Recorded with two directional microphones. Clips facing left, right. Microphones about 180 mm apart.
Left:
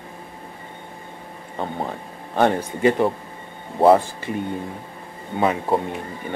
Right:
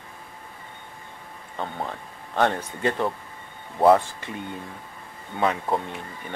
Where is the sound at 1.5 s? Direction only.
15° left (ahead or behind).